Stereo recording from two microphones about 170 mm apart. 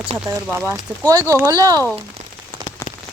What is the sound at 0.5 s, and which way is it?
Speech, 10° right (ahead or behind).